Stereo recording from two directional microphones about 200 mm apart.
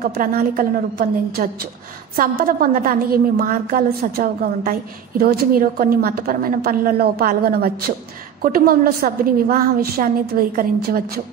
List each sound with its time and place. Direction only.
0.0 s a woman's voice: 45° right (ahead or behind)